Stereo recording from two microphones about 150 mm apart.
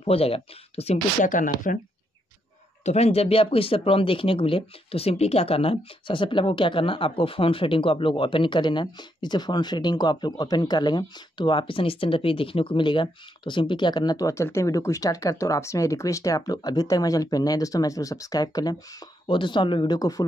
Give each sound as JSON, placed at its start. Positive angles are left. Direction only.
{"t": 0.0, "sound": "speech", "side_deg": 40}
{"t": 1.2, "sound": "speech", "side_deg": 60}
{"t": 2.8, "sound": "speech", "side_deg": 45}